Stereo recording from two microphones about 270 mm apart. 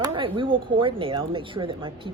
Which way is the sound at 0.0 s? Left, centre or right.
Centre.